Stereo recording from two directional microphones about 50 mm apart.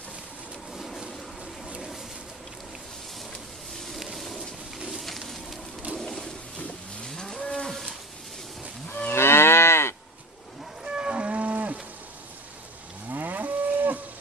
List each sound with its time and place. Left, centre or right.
0.7 s vehicle: centre
3.9 s a sound: centre
5.0 s a sound: centre
5.9 s toilet flush: centre
7.1 s livestock: centre
9.1 s moo: left
10.8 s livestock: centre
13.1 s moo: right